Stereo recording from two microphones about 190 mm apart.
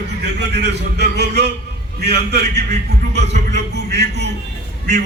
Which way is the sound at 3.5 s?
65° right (ahead or behind).